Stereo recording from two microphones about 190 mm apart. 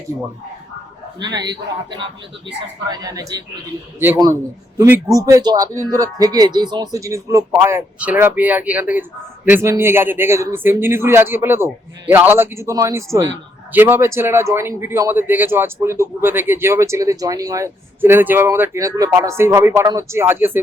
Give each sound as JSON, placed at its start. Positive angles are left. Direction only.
{"t": 1.2, "sound": "a man's voice", "side_deg": -20}
{"t": 5.1, "sound": "a man's voice", "side_deg": -20}